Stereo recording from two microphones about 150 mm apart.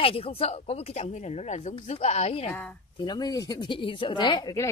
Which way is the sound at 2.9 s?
30° left (ahead or behind).